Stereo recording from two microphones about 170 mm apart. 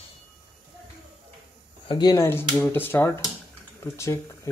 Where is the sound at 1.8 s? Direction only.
25° left (ahead or behind).